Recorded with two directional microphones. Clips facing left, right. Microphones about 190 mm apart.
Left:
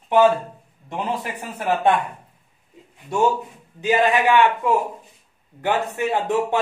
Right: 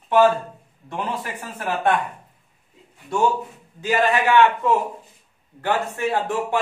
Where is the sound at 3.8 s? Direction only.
20° left (ahead or behind).